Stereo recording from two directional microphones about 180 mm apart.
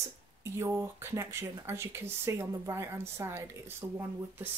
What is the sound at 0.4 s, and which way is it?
Speech, 15° right (ahead or behind).